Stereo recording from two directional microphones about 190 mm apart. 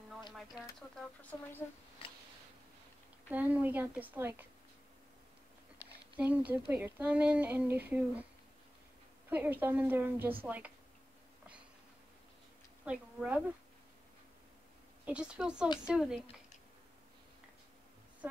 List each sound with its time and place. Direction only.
0.3 s speech: centre (ahead or behind)
3.3 s speech: 10° right (ahead or behind)
5.8 s a sound: 20° left (ahead or behind)
6.1 s speech: 5° right (ahead or behind)
9.3 s speech: 10° right (ahead or behind)
12.8 s a woman's voice: 5° right (ahead or behind)
15.0 s speech: 5° right (ahead or behind)
18.2 s a woman's voice: 10° right (ahead or behind)